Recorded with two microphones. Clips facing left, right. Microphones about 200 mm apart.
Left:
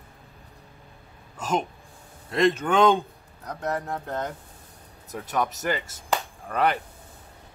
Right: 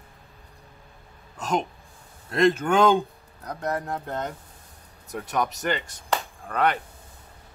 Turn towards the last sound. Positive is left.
turn(degrees=5)  # may be behind; listen again after turning